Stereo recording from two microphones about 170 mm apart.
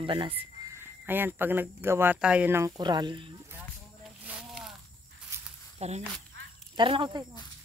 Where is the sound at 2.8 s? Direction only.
25° right (ahead or behind).